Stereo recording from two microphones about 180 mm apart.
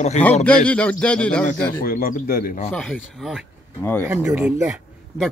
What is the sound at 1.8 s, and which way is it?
Speech, 55° left (ahead or behind).